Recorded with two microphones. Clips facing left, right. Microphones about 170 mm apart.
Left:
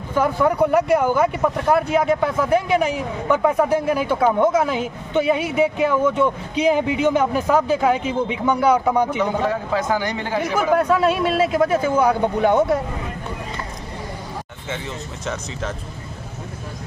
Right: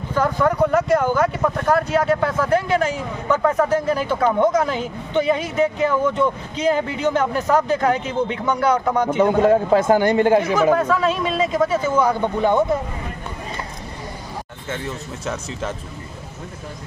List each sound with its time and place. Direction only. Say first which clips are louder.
0.1 s speech: left 1 dB; 10° left (ahead or behind)
9.1 s speech: right 6 dB; 50° right (ahead or behind)
10.5 s speech: right 1 dB; 10° left (ahead or behind)